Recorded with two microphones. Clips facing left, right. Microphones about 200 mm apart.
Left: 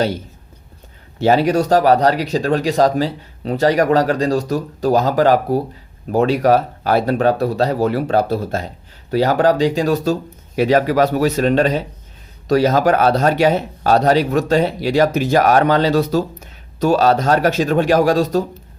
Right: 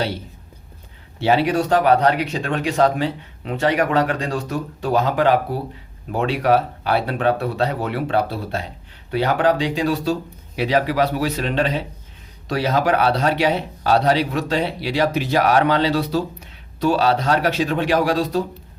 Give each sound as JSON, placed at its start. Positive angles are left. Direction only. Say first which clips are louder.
{"t": 1.2, "sound": "a man's voice", "louder": "left 4 dB", "side_deg": 40}